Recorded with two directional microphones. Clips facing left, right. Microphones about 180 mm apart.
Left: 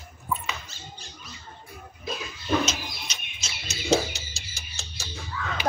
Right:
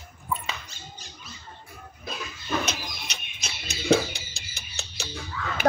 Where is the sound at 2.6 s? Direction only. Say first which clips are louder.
Left 2 dB; 60° right (ahead or behind).